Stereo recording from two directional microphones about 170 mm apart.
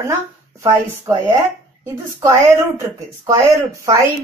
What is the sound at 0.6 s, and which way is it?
A woman's voice, 15° right (ahead or behind).